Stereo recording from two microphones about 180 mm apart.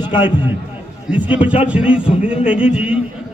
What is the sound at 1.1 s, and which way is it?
A man's voice, 5° right (ahead or behind).